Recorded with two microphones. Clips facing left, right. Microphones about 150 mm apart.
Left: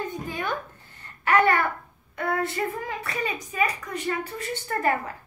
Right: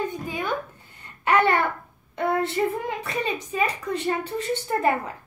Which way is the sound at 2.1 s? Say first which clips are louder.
Right 3 dB; 20° right (ahead or behind).